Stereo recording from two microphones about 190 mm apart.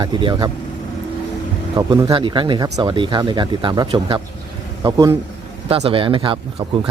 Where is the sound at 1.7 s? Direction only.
20° right (ahead or behind).